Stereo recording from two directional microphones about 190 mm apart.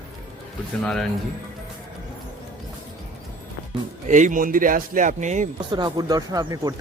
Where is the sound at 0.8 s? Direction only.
Centre (ahead or behind).